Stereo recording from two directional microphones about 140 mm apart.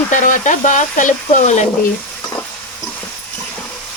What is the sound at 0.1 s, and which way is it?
Speech, 65° left (ahead or behind).